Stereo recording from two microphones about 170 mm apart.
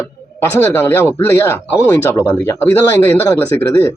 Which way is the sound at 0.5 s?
15° left (ahead or behind).